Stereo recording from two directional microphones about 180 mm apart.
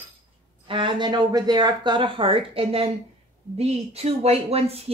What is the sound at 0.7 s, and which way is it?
Speech, 25° right (ahead or behind).